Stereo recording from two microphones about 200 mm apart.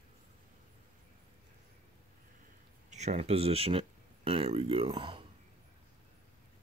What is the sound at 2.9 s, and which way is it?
Speech, 35° right (ahead or behind).